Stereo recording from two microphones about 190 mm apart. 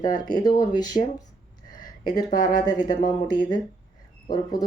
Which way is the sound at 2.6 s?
20° left (ahead or behind).